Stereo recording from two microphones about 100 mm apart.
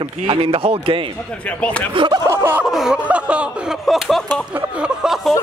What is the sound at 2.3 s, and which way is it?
Speech, 25° right (ahead or behind).